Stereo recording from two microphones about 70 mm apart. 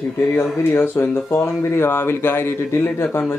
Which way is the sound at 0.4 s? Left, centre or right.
Left.